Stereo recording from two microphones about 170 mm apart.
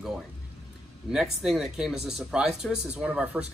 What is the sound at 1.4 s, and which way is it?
Speech, centre (ahead or behind).